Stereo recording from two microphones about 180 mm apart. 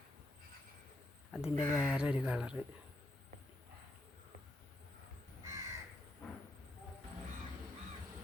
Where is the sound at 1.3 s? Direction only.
5° right (ahead or behind).